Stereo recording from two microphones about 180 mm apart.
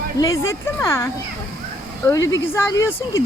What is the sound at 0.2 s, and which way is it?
Speech, 15° left (ahead or behind).